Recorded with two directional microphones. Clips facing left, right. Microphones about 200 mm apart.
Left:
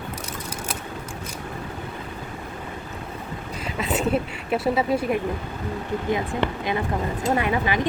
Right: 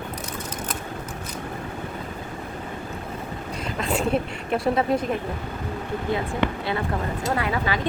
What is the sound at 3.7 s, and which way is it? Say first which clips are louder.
Speech: left 1 dB; 5° left (ahead or behind).